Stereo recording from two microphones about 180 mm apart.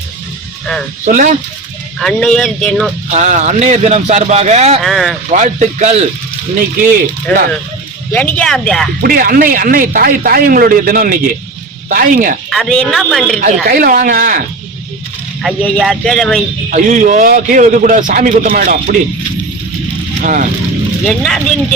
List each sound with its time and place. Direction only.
1.0 s a man's voice: 45° right (ahead or behind)
2.0 s speech: centre (ahead or behind)
3.1 s a man's voice: 40° right (ahead or behind)
4.8 s speech: centre (ahead or behind)
5.3 s a man's voice: 45° right (ahead or behind)
8.1 s speech: 10° left (ahead or behind)
9.0 s a man's voice: 55° right (ahead or behind)
12.5 s speech: centre (ahead or behind)
13.4 s a man's voice: 50° right (ahead or behind)
15.4 s speech: centre (ahead or behind)
16.6 s a man's voice: 45° right (ahead or behind)
20.2 s a man's voice: 45° right (ahead or behind)
21.1 s speech: centre (ahead or behind)